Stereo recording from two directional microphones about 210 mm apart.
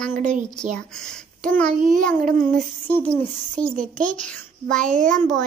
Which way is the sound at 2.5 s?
10° left (ahead or behind).